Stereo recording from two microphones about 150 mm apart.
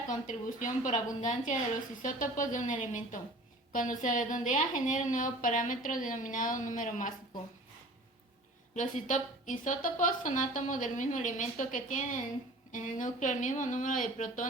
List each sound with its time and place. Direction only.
0.3 s a woman's voice: 55° left (ahead or behind)
8.7 s a woman's voice: 55° left (ahead or behind)